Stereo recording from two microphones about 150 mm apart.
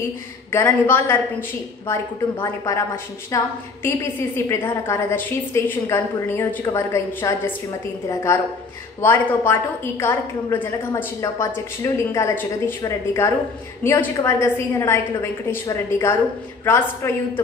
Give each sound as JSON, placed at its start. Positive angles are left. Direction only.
{"t": 0.5, "sound": "a woman's voice", "side_deg": 15}
{"t": 2.4, "sound": "a woman's voice", "side_deg": 20}